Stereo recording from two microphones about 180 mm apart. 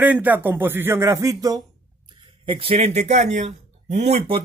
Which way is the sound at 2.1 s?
30° right (ahead or behind).